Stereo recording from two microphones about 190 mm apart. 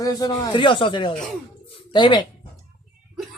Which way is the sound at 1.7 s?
25° left (ahead or behind).